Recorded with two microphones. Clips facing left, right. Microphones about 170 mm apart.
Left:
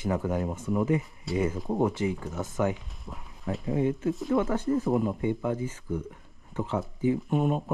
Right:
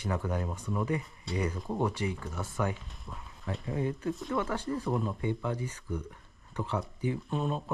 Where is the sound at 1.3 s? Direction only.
Centre (ahead or behind).